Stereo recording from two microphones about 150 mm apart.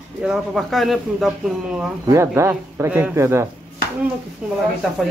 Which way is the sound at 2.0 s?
20° right (ahead or behind).